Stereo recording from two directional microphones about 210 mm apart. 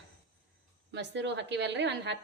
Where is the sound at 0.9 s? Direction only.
55° right (ahead or behind).